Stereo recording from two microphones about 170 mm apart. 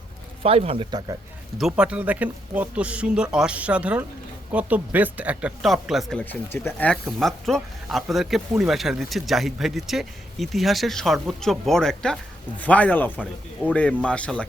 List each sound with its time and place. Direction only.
0.4 s a man's voice: 35° right (ahead or behind)
1.5 s speech: 5° right (ahead or behind)
6.5 s speech: 10° left (ahead or behind)